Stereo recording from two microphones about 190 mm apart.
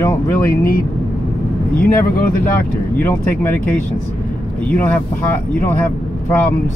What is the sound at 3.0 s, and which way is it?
Speech, 10° left (ahead or behind).